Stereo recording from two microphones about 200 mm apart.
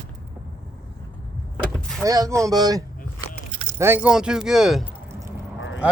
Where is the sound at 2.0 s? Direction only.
15° right (ahead or behind).